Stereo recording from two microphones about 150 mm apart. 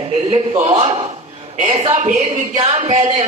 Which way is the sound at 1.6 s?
55° right (ahead or behind).